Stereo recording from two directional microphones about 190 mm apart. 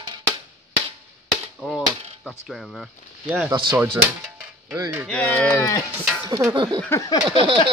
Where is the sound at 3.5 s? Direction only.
20° right (ahead or behind).